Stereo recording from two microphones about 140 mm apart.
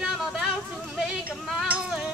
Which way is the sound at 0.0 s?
5° right (ahead or behind).